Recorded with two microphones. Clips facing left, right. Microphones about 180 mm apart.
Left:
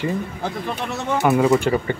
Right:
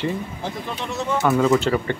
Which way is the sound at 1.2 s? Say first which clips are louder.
Left 2 dB; 15° left (ahead or behind).